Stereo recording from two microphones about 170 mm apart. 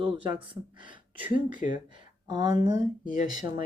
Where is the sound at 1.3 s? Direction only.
50° left (ahead or behind).